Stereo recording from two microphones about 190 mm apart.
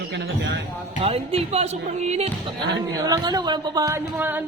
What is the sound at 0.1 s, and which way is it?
Speech, 65° right (ahead or behind).